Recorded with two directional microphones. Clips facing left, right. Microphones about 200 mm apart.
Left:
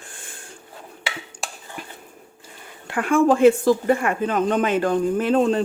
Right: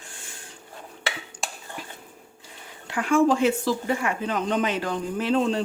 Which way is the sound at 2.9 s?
55° left (ahead or behind).